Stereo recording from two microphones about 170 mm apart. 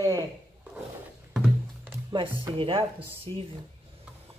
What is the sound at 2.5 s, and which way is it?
Speech, 30° right (ahead or behind).